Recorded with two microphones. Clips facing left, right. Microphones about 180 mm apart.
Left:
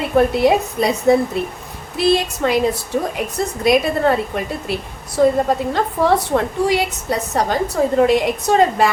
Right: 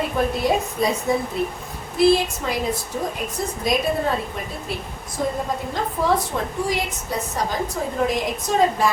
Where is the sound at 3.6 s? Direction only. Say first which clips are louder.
Left 7 dB; 70° left (ahead or behind).